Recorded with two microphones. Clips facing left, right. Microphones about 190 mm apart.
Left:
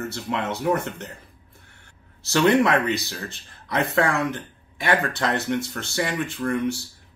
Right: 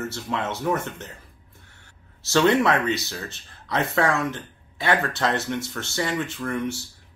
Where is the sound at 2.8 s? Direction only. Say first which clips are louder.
Even; 20° right (ahead or behind).